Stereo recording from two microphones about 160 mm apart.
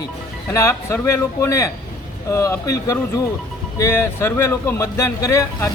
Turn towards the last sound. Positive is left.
turn(degrees=15)  # may be behind; listen again after turning